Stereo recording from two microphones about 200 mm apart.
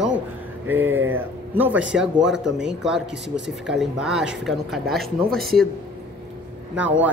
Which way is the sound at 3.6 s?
Centre (ahead or behind).